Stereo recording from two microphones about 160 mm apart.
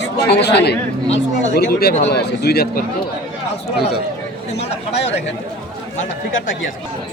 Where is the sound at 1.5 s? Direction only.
75° left (ahead or behind).